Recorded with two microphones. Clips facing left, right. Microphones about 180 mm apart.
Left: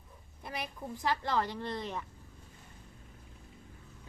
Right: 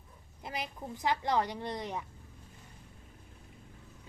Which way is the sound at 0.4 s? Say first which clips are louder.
Right 1 dB; 20° right (ahead or behind).